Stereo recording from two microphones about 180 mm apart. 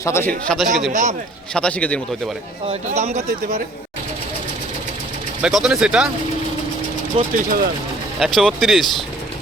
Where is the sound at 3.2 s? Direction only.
50° right (ahead or behind).